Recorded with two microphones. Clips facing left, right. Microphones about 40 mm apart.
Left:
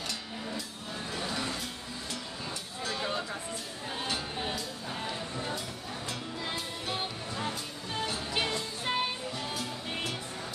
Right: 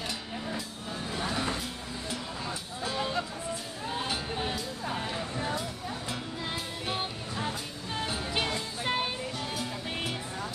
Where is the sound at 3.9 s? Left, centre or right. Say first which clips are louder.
Right 2 dB; centre.